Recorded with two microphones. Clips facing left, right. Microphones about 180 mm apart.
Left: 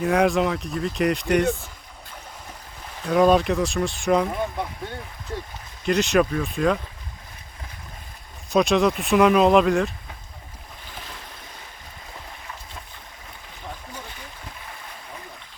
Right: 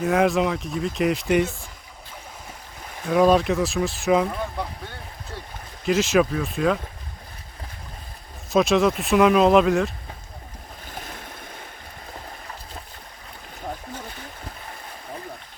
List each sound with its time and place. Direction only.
0.0 s speech: centre (ahead or behind)
3.1 s speech: centre (ahead or behind)
5.8 s speech: centre (ahead or behind)
8.4 s speech: centre (ahead or behind)
10.9 s a sound: 50° right (ahead or behind)